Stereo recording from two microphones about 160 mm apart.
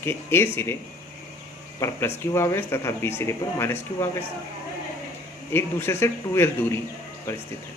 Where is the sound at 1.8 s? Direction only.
15° left (ahead or behind).